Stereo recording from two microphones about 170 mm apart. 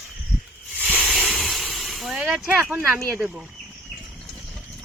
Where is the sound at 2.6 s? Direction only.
10° right (ahead or behind).